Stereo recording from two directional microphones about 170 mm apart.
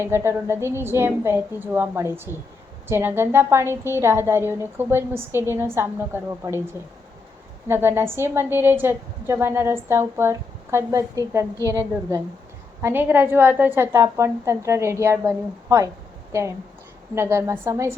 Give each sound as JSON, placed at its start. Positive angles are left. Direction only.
{"t": 0.0, "sound": "a woman's voice", "side_deg": -15}
{"t": 7.7, "sound": "a woman's voice", "side_deg": -15}
{"t": 12.8, "sound": "a woman's voice", "side_deg": -10}